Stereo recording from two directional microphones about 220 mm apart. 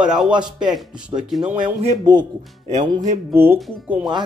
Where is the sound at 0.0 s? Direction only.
Centre (ahead or behind).